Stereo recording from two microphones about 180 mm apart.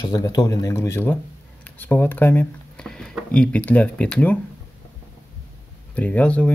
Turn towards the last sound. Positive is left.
turn(degrees=10)  # may be behind; listen again after turning